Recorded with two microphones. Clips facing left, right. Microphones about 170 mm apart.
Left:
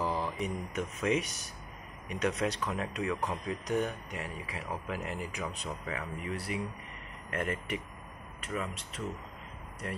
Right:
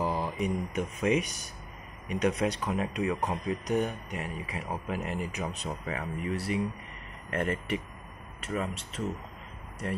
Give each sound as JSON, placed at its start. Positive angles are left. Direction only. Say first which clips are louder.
{"t": 0.0, "sound": "mantra", "louder": "right 2 dB", "side_deg": -15}
{"t": 0.7, "sound": "speech", "louder": "right 2 dB", "side_deg": -15}